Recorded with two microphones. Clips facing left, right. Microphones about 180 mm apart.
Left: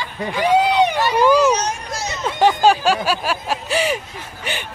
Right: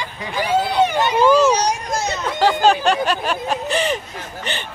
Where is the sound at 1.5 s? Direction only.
35° right (ahead or behind).